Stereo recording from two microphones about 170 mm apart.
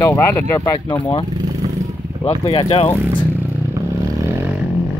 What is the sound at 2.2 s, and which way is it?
Speech, 30° left (ahead or behind).